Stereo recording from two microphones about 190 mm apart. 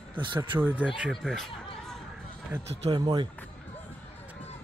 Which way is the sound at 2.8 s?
25° right (ahead or behind).